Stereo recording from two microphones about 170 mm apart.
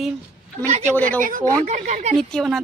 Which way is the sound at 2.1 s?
5° left (ahead or behind).